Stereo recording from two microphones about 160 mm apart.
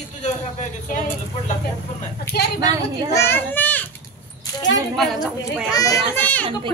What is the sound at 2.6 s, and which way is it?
Speech, 25° right (ahead or behind).